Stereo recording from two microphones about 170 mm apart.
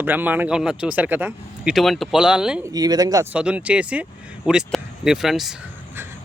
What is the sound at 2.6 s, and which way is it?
Speech, 20° right (ahead or behind).